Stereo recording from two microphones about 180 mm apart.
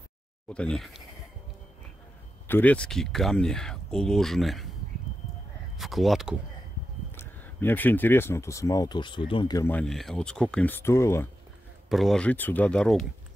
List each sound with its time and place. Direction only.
0.5 s speech: 5° left (ahead or behind)
2.4 s speech: 10° left (ahead or behind)
5.8 s speech: centre (ahead or behind)
7.2 s speech: 10° left (ahead or behind)
9.7 s speech: 5° left (ahead or behind)
11.9 s speech: centre (ahead or behind)